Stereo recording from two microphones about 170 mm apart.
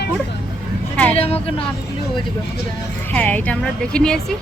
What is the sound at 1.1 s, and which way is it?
Speech, 35° left (ahead or behind).